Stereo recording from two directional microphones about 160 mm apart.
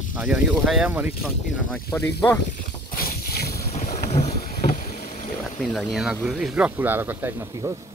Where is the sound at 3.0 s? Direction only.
70° left (ahead or behind).